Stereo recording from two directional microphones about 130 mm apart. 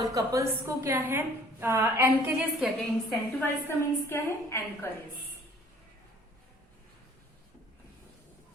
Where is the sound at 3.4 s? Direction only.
20° left (ahead or behind).